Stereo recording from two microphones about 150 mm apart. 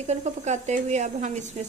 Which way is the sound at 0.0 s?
50° right (ahead or behind).